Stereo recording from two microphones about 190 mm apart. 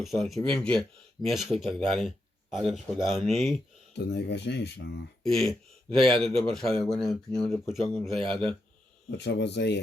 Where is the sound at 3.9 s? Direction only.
60° left (ahead or behind).